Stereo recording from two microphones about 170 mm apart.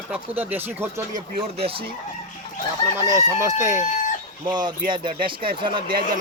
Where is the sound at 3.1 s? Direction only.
20° right (ahead or behind).